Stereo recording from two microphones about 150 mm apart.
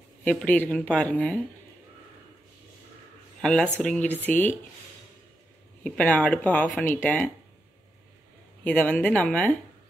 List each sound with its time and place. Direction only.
0.2 s speech: 10° left (ahead or behind)
3.3 s speech: 5° left (ahead or behind)
5.9 s speech: 5° left (ahead or behind)
8.6 s speech: 10° left (ahead or behind)